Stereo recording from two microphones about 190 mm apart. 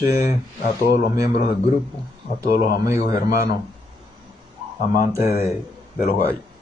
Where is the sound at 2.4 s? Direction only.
50° left (ahead or behind).